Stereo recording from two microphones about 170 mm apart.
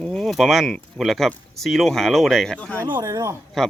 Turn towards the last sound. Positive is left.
turn(degrees=-20)  # may be behind; listen again after turning